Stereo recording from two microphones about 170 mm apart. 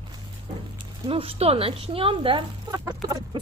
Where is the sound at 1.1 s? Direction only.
35° right (ahead or behind).